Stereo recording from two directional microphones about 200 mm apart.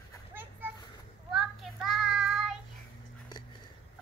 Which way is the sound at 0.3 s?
10° right (ahead or behind).